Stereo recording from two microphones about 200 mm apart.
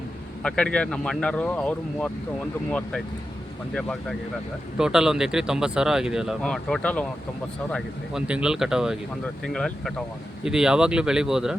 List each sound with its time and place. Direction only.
0.4 s speech: 5° left (ahead or behind)
3.8 s speech: 5° left (ahead or behind)